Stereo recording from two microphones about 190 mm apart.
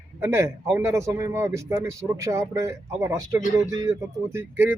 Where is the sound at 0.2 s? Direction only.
15° right (ahead or behind).